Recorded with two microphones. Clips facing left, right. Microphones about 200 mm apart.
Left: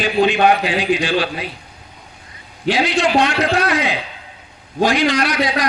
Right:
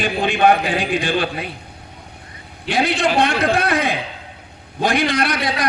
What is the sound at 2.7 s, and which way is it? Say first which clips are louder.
A man's voice: left 2 dB; 55° right (ahead or behind).